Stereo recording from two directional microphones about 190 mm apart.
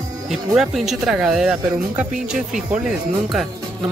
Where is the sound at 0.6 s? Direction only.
Centre (ahead or behind).